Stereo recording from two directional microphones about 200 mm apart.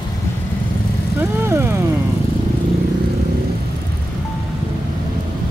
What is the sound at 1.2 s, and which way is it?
Speech, 10° right (ahead or behind).